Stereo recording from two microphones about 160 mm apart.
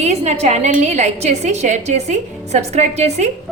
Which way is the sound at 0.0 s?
45° right (ahead or behind).